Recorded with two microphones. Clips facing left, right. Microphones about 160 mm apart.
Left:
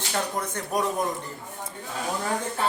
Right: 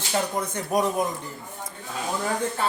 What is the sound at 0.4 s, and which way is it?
Speech, 10° right (ahead or behind).